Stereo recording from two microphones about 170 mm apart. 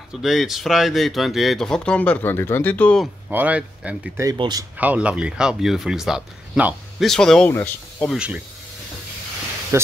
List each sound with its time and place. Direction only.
0.2 s speech: centre (ahead or behind)
3.3 s speech: 10° right (ahead or behind)
4.2 s speech: 20° right (ahead or behind)
4.7 s speech: 10° right (ahead or behind); by 8.1 s 10° left (ahead or behind)
8.1 s speech: 5° right (ahead or behind)